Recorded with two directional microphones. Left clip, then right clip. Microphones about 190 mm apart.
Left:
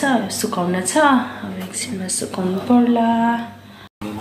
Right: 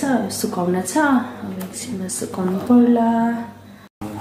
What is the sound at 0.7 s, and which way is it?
Speech, centre (ahead or behind).